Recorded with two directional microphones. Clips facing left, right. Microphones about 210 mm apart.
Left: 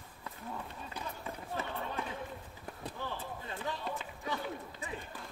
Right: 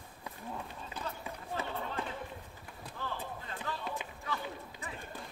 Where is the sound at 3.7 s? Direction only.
15° left (ahead or behind).